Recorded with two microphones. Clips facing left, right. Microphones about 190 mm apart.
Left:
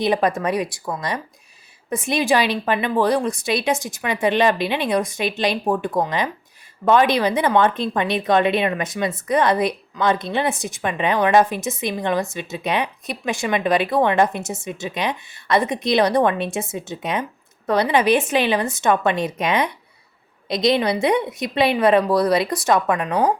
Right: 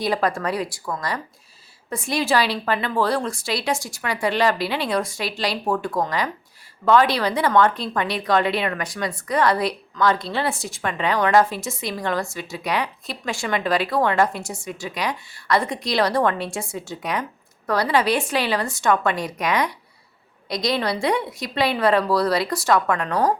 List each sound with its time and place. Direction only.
0.0 s speech: 20° left (ahead or behind)